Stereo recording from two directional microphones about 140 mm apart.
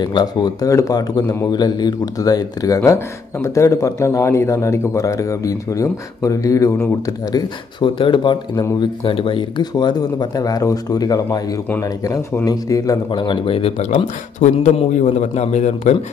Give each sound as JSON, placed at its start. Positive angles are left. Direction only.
{"t": 0.0, "sound": "speech", "side_deg": 30}